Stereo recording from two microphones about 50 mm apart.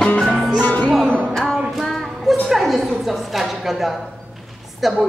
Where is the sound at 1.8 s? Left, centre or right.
Centre.